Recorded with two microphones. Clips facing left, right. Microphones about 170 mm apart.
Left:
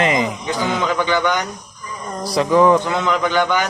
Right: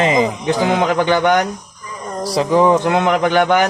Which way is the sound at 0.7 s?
65° right (ahead or behind).